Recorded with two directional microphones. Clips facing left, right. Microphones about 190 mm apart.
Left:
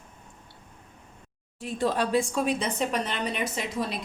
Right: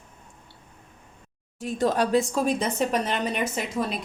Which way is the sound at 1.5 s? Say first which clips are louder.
Right 3 dB; 45° right (ahead or behind).